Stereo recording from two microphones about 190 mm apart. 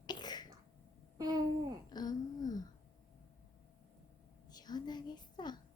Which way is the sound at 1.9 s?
20° left (ahead or behind).